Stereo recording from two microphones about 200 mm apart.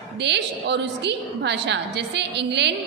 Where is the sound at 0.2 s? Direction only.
55° right (ahead or behind).